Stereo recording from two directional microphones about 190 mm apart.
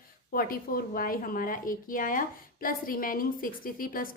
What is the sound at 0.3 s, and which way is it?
Speech, 50° left (ahead or behind).